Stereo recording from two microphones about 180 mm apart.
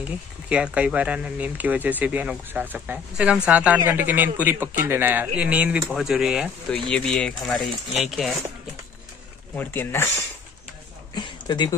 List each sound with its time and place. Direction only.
0.0 s speech: 5° right (ahead or behind)
6.9 s speech: 5° left (ahead or behind)
9.6 s speech: 10° left (ahead or behind)
11.1 s speech: 25° left (ahead or behind)